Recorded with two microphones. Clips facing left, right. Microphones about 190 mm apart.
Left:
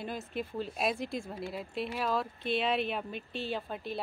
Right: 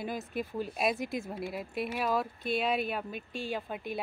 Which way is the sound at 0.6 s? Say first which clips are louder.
Right 2 dB; 5° right (ahead or behind).